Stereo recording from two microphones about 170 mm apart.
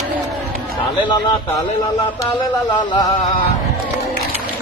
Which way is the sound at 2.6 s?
25° left (ahead or behind).